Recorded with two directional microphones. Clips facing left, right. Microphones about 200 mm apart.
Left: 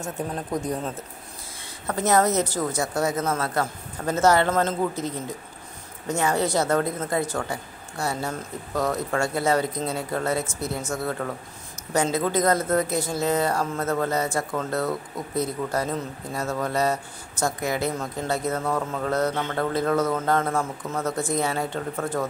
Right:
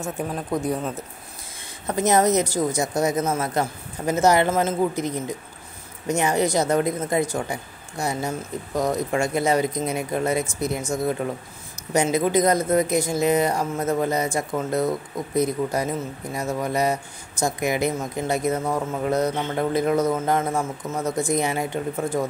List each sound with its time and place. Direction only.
0.0 s speech: 5° right (ahead or behind)
1.9 s speech: 20° right (ahead or behind)